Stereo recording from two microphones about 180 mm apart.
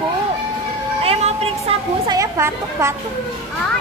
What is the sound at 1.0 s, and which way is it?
A woman's voice, 35° right (ahead or behind).